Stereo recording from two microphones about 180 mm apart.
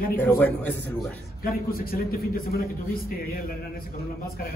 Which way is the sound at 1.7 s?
55° left (ahead or behind).